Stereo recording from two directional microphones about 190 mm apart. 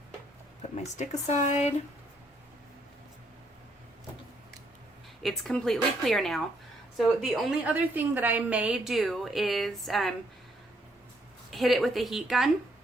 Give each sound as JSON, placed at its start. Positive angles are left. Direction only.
{"t": 0.9, "sound": "speech", "side_deg": 35}
{"t": 5.2, "sound": "a woman's voice", "side_deg": 0}
{"t": 11.5, "sound": "a woman's voice", "side_deg": 0}